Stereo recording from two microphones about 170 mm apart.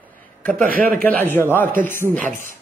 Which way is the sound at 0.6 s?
55° right (ahead or behind).